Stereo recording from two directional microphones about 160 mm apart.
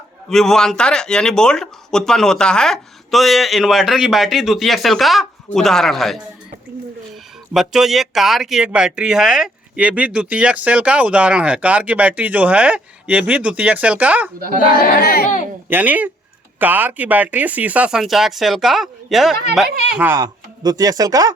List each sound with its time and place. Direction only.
0.3 s speech: 5° left (ahead or behind)
7.5 s speech: 5° right (ahead or behind)
14.7 s a child's voice: 70° left (ahead or behind)
15.7 s speech: 10° right (ahead or behind)
20.0 s speech: 15° right (ahead or behind)
20.2 s speech: 25° right (ahead or behind)